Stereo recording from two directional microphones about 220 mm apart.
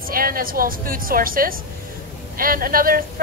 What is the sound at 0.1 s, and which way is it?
A woman's voice, 40° right (ahead or behind).